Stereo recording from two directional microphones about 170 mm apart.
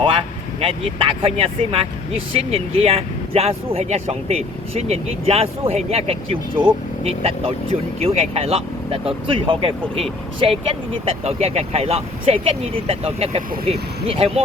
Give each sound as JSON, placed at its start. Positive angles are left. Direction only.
{"t": 0.0, "sound": "speech", "side_deg": -30}